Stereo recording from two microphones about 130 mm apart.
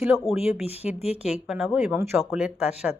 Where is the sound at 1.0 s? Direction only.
55° left (ahead or behind).